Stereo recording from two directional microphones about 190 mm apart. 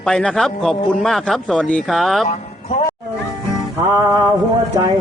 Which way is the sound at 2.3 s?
40° left (ahead or behind).